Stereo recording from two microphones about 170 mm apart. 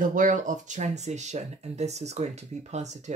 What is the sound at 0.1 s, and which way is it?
Speech, 50° right (ahead or behind).